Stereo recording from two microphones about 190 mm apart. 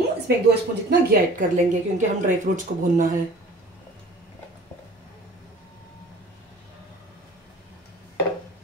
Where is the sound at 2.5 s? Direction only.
50° right (ahead or behind).